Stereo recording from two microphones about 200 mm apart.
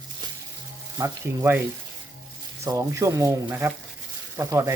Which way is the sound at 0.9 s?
15° right (ahead or behind).